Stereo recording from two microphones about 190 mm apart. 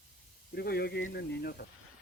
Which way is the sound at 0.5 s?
55° left (ahead or behind).